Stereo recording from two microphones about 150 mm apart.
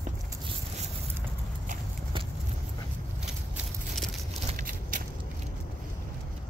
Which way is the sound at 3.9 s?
Centre (ahead or behind).